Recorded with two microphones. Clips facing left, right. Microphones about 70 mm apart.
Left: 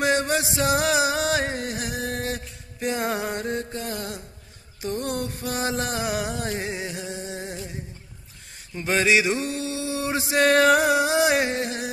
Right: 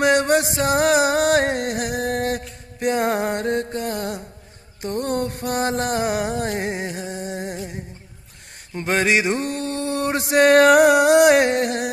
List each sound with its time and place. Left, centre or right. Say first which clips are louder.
0.0 s music: right 5 dB; right
3.7 s mantra: right 6 dB; right
4.8 s music: right 4 dB; right
8.7 s mantra: right 1 dB; right